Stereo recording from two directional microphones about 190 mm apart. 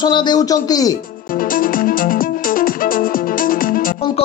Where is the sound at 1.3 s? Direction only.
45° left (ahead or behind).